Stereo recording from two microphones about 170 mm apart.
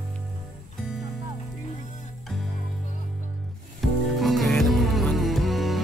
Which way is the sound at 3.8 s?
Centre (ahead or behind).